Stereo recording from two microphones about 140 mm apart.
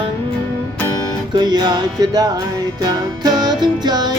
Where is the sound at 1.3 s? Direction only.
30° right (ahead or behind).